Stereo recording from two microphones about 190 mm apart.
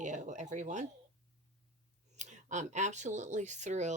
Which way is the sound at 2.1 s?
40° right (ahead or behind).